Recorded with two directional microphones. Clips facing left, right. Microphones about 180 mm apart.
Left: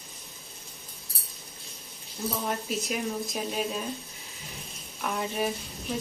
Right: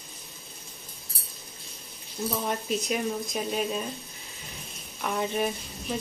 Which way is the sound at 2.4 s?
Centre (ahead or behind).